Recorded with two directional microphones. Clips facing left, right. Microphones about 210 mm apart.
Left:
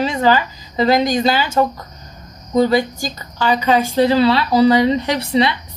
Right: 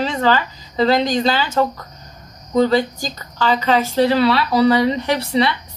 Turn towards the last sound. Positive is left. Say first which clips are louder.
# left 1 dB
turn(degrees=20)  # may be behind; listen again after turning